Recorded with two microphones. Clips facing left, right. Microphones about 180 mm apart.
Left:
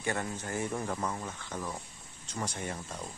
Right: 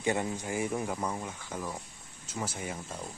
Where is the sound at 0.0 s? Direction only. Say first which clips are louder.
Right 4 dB; 15° right (ahead or behind).